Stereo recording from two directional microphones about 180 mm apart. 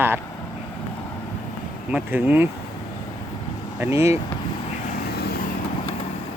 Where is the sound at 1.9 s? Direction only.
10° right (ahead or behind).